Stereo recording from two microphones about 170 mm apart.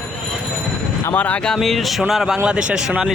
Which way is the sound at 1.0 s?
10° left (ahead or behind).